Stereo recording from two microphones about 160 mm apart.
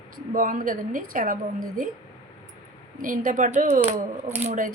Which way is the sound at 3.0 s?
55° right (ahead or behind).